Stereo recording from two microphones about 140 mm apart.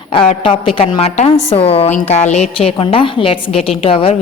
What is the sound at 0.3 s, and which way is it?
A woman's voice, 40° left (ahead or behind).